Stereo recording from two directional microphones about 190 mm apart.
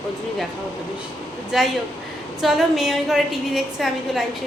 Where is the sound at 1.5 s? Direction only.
Centre (ahead or behind).